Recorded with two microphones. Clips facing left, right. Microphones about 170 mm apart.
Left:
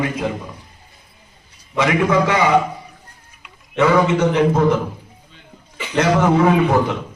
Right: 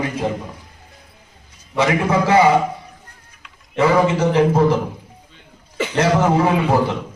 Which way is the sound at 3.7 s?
30° right (ahead or behind).